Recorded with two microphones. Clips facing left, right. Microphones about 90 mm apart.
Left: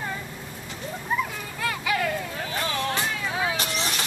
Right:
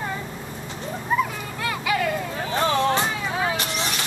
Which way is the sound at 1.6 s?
Centre (ahead or behind).